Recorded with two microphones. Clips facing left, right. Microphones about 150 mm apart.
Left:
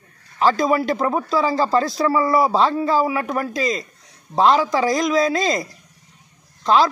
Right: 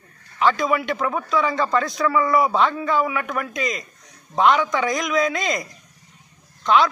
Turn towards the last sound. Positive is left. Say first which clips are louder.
# left 1 dB
turn(degrees=35)  # may be behind; listen again after turning